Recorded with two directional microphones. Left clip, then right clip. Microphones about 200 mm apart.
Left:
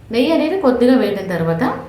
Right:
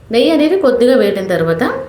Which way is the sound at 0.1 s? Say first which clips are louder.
Right 5 dB; 15° right (ahead or behind).